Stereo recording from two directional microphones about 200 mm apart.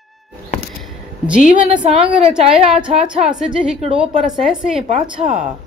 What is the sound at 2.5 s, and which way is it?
A woman's voice, 5° right (ahead or behind).